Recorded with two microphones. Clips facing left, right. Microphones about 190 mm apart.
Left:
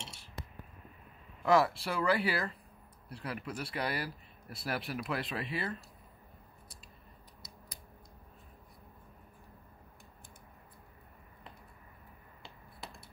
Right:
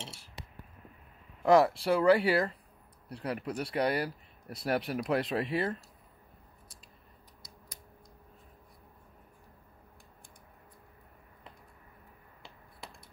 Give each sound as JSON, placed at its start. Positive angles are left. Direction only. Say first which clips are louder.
{"t": 1.4, "sound": "speech", "louder": "right 4 dB", "side_deg": -30}